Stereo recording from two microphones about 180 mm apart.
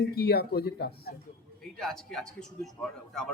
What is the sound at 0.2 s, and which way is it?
Speech, 60° left (ahead or behind).